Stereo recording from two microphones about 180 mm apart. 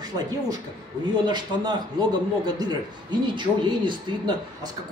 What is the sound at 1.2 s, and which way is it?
Speech, 25° right (ahead or behind).